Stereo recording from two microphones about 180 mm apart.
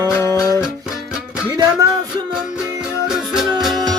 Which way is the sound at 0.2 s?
15° left (ahead or behind).